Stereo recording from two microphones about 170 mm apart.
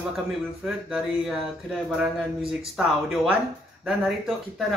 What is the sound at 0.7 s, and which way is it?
Speech, 5° right (ahead or behind).